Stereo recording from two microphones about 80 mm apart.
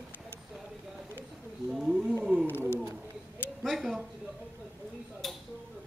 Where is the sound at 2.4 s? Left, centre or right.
Left.